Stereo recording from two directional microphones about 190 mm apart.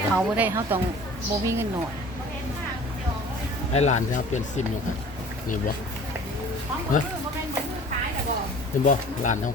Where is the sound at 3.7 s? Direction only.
35° left (ahead or behind).